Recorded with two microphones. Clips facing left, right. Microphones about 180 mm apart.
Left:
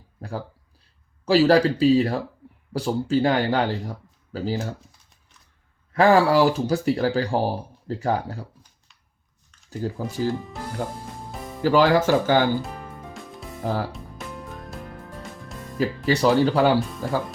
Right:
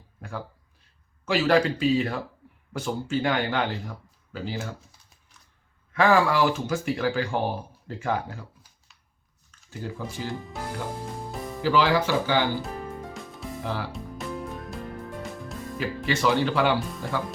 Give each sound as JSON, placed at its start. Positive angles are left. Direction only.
{"t": 0.2, "sound": "speech", "side_deg": 35}
{"t": 5.9, "sound": "speech", "side_deg": 35}
{"t": 9.6, "sound": "speech", "side_deg": 40}
{"t": 16.0, "sound": "speech", "side_deg": 40}